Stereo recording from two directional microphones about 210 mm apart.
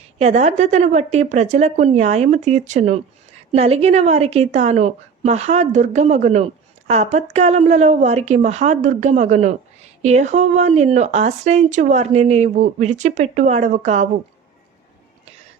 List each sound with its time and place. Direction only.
0.2 s a woman's voice: 30° right (ahead or behind)